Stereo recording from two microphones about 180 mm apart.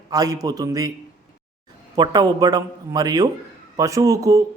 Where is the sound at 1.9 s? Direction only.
20° right (ahead or behind).